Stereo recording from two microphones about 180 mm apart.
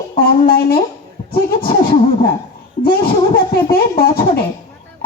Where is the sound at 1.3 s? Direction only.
30° left (ahead or behind).